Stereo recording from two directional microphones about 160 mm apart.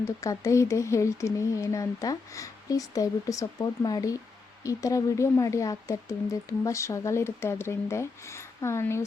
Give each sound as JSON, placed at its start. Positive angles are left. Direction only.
{"t": 0.0, "sound": "speech", "side_deg": 20}